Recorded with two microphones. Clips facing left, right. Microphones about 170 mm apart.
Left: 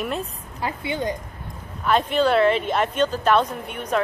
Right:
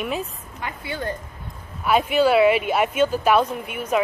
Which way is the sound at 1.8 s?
5° right (ahead or behind).